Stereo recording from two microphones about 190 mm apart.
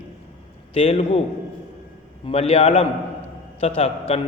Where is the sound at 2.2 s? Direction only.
35° left (ahead or behind).